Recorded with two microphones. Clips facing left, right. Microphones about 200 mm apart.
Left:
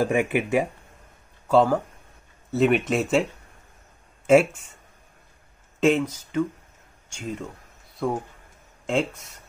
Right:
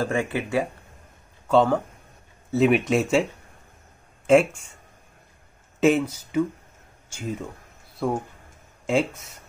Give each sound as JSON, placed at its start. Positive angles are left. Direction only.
{"t": 0.0, "sound": "speech", "side_deg": 15}
{"t": 1.5, "sound": "speech", "side_deg": 5}
{"t": 4.3, "sound": "speech", "side_deg": 5}
{"t": 5.8, "sound": "speech", "side_deg": -5}